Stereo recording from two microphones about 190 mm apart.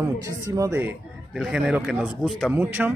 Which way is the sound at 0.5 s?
15° right (ahead or behind).